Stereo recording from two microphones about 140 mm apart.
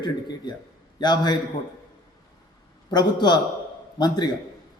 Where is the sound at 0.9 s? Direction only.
30° left (ahead or behind).